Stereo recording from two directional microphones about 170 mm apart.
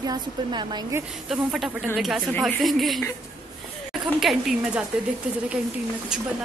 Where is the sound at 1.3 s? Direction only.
5° right (ahead or behind).